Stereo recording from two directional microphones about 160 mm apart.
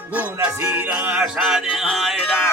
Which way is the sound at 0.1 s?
10° right (ahead or behind).